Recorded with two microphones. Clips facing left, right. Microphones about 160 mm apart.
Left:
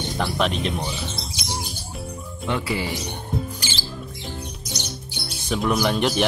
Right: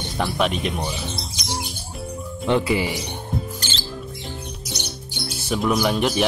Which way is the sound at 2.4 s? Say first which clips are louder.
Right 6 dB; 25° right (ahead or behind).